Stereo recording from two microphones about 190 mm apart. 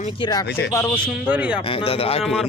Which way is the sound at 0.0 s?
25° left (ahead or behind).